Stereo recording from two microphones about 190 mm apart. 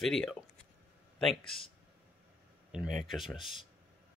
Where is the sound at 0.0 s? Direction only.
Centre (ahead or behind).